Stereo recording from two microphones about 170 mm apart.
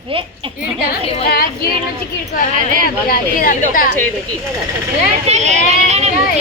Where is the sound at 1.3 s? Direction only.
65° left (ahead or behind).